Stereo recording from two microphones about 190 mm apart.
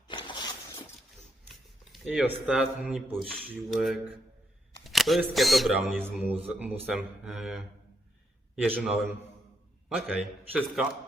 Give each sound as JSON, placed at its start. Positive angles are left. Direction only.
{"t": 0.1, "sound": "a sound", "side_deg": 25}
{"t": 1.9, "sound": "a man's voice", "side_deg": -5}
{"t": 8.7, "sound": "a man's voice", "side_deg": -5}
{"t": 10.1, "sound": "speech", "side_deg": -5}